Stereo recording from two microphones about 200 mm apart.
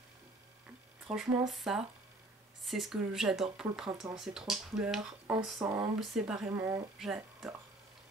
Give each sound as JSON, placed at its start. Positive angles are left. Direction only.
{"t": 1.1, "sound": "speech", "side_deg": 0}